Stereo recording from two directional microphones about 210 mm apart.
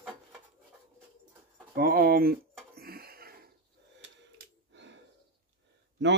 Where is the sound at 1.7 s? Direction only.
45° right (ahead or behind).